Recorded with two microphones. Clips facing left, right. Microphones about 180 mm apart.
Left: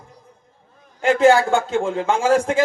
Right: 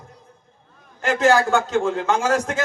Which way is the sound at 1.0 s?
30° left (ahead or behind).